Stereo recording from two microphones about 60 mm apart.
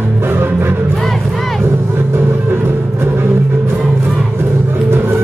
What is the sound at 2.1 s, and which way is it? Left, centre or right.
Music, right.